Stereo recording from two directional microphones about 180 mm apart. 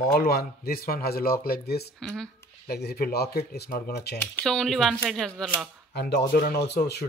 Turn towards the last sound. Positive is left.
turn(degrees=65)  # may be behind; listen again after turning